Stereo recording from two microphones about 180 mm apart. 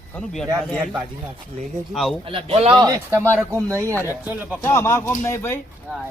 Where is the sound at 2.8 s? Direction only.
20° right (ahead or behind).